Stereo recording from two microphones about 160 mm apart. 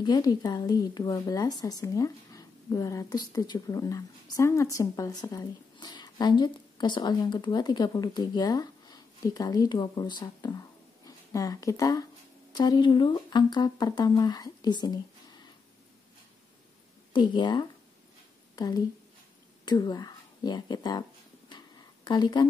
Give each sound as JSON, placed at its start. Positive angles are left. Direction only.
{"t": 0.0, "sound": "speech", "side_deg": 25}
{"t": 17.1, "sound": "speech", "side_deg": 30}
{"t": 21.5, "sound": "a sound", "side_deg": 25}